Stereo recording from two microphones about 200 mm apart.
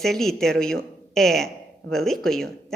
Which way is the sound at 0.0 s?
Centre (ahead or behind).